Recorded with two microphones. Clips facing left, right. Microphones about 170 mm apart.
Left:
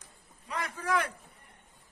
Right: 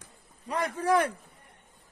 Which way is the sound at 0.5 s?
30° right (ahead or behind).